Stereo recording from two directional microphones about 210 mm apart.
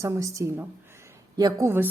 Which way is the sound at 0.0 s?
15° right (ahead or behind).